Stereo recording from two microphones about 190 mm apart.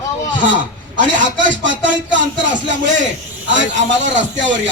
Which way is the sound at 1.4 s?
75° right (ahead or behind).